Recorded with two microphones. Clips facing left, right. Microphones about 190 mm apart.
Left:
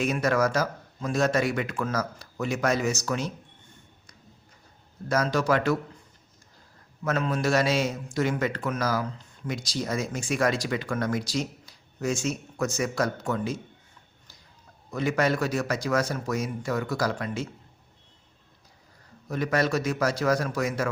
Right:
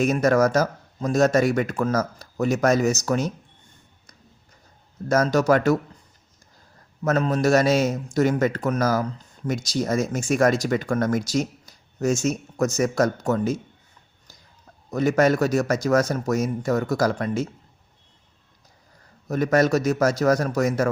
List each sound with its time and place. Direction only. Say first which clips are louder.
0.0 s speech: right 6 dB; 45° right (ahead or behind)
5.0 s speech: right 5 dB; 45° right (ahead or behind)
7.0 s speech: right 6 dB; 40° right (ahead or behind)
14.8 s speech: right 6 dB; 45° right (ahead or behind)
19.3 s speech: right 6 dB; 45° right (ahead or behind)